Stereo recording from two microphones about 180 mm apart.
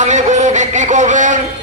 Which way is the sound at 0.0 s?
40° right (ahead or behind).